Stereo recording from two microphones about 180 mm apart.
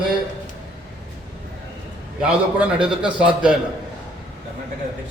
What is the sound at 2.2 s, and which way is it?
A man's voice, 5° right (ahead or behind).